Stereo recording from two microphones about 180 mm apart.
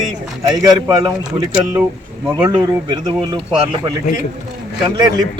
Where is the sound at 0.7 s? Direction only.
20° right (ahead or behind).